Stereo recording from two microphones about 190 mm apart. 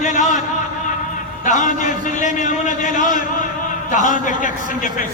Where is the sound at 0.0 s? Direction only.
40° left (ahead or behind).